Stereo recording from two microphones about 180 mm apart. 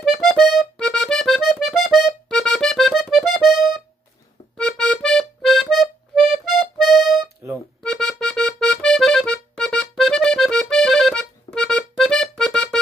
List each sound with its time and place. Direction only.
0.0 s accordion: centre (ahead or behind)